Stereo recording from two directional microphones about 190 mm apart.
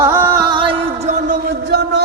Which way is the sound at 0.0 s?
10° right (ahead or behind).